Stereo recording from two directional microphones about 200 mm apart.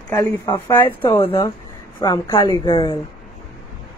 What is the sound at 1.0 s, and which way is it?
A woman's voice, 25° left (ahead or behind).